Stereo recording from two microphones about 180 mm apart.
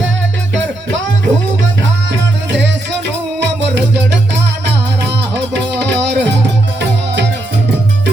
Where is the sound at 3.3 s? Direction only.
75° right (ahead or behind).